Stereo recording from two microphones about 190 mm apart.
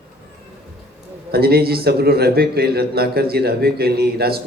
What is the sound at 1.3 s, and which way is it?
A man's voice, 55° right (ahead or behind).